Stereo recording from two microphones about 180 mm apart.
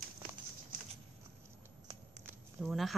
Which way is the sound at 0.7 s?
50° right (ahead or behind).